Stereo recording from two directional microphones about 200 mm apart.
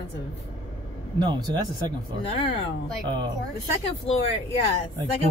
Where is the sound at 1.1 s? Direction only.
20° right (ahead or behind).